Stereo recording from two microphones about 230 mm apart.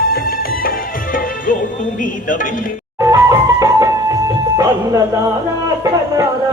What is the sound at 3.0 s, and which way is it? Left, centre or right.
Music, centre.